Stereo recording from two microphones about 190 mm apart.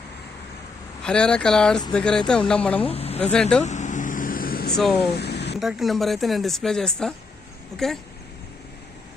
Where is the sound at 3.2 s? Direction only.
5° left (ahead or behind).